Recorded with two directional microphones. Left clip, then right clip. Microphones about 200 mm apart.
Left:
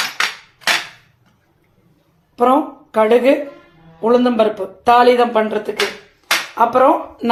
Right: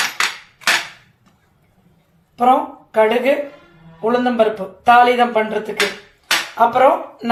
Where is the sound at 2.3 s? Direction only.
40° left (ahead or behind).